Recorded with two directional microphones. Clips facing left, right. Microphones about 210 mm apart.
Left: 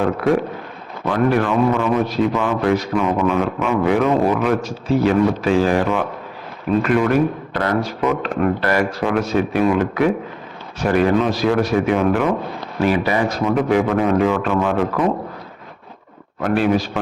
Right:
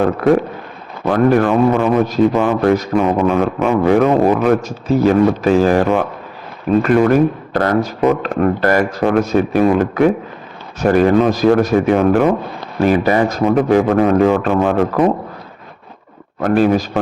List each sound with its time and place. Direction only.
1.0 s a man's voice: 45° right (ahead or behind)
16.4 s a man's voice: 45° right (ahead or behind)